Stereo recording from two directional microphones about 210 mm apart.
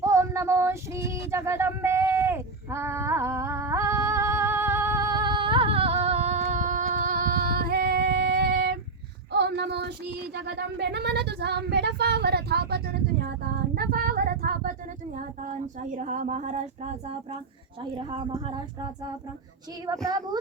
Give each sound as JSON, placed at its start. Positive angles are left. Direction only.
{"t": 0.0, "sound": "a sound", "side_deg": -15}
{"t": 9.3, "sound": "child singing", "side_deg": -55}
{"t": 10.3, "sound": "a sound", "side_deg": -55}
{"t": 13.7, "sound": "speech", "side_deg": -45}
{"t": 18.2, "sound": "speech", "side_deg": -25}
{"t": 20.1, "sound": "speech", "side_deg": -15}